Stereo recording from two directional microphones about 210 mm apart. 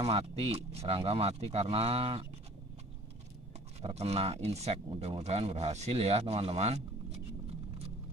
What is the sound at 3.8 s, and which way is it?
Speech, 30° right (ahead or behind).